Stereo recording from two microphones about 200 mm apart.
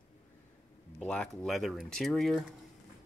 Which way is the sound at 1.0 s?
5° left (ahead or behind).